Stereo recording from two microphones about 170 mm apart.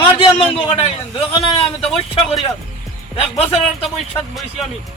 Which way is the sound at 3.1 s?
35° left (ahead or behind).